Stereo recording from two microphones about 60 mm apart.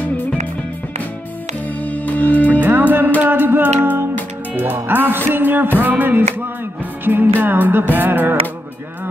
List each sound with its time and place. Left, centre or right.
1.8 s music: left
2.6 s music: right